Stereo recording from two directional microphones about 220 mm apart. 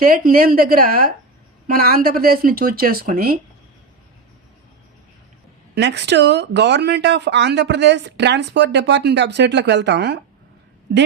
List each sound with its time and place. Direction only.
0.3 s speech: 40° right (ahead or behind)
5.7 s speech: 50° right (ahead or behind)